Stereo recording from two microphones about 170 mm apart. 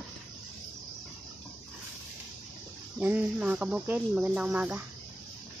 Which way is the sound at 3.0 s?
10° right (ahead or behind).